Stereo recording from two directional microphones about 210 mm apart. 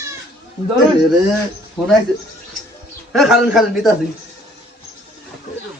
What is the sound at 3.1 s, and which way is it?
Speech, centre (ahead or behind).